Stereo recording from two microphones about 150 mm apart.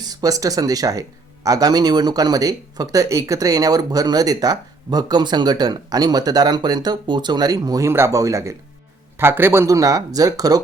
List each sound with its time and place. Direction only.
0.0 s speech: 25° right (ahead or behind)